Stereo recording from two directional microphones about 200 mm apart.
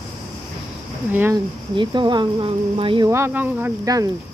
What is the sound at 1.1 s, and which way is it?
Speech, 10° right (ahead or behind).